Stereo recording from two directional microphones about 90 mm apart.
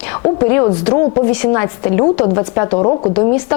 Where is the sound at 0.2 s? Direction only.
25° left (ahead or behind).